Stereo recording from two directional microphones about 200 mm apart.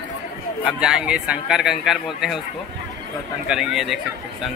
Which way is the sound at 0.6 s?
5° right (ahead or behind).